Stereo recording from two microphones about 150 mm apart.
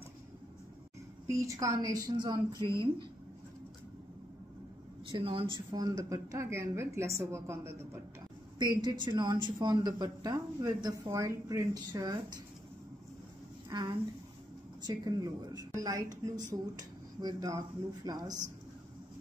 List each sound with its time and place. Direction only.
1.2 s speech: 20° right (ahead or behind)
5.1 s speech: 35° right (ahead or behind); by 8.0 s 15° right (ahead or behind)
8.8 s speech: 30° right (ahead or behind)
13.7 s speech: 30° right (ahead or behind)